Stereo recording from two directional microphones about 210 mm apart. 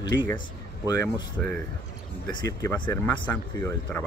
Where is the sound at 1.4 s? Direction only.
5° left (ahead or behind).